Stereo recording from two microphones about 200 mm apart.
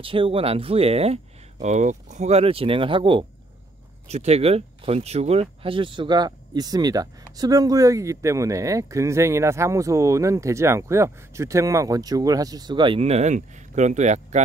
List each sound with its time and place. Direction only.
0.0 s speech: 25° right (ahead or behind)